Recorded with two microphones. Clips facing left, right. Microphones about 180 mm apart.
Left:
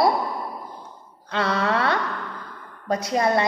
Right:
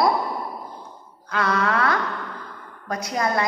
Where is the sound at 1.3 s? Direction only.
30° left (ahead or behind).